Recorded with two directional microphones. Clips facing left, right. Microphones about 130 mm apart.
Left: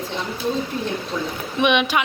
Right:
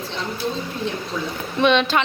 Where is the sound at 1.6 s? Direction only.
15° left (ahead or behind).